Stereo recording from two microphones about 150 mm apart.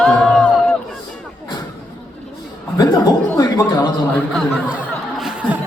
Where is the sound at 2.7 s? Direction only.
25° left (ahead or behind).